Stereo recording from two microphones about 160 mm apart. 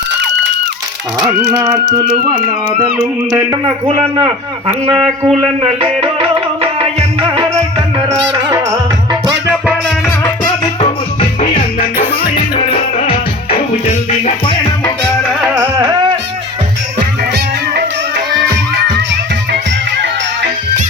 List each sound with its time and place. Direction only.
1.3 s speech: 10° right (ahead or behind)
2.0 s a man's voice: 30° right (ahead or behind)
4.7 s speech: 15° right (ahead or behind)
5.4 s music: 30° right (ahead or behind)
7.8 s music: 20° right (ahead or behind)
8.3 s music: 30° right (ahead or behind)
8.5 s music: 15° right (ahead or behind)
10.2 s music: 25° left (ahead or behind)
10.8 s music: 40° left (ahead or behind)
12.3 s music: 30° left (ahead or behind)
14.4 s music: 30° left (ahead or behind)
15.3 s music: centre (ahead or behind)